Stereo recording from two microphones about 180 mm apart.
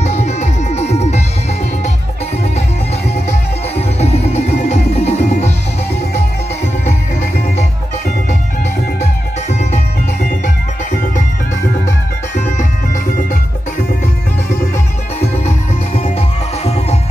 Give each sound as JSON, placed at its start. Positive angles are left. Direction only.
{"t": 0.0, "sound": "music", "side_deg": 35}
{"t": 3.3, "sound": "music", "side_deg": 35}
{"t": 9.0, "sound": "music", "side_deg": 40}
{"t": 12.4, "sound": "music", "side_deg": 40}
{"t": 16.0, "sound": "music", "side_deg": 35}